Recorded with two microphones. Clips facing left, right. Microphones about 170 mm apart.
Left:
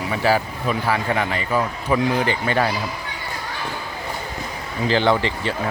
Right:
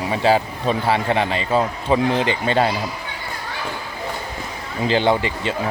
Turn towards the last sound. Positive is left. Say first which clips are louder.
# even
turn(degrees=-15)  # may be behind; listen again after turning